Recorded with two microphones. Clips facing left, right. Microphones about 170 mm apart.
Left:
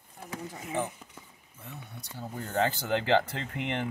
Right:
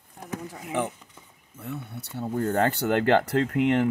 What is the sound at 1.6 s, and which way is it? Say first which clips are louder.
Speech: right 9 dB; 65° right (ahead or behind).